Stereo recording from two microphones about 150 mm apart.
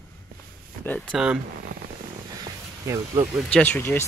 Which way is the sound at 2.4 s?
25° right (ahead or behind).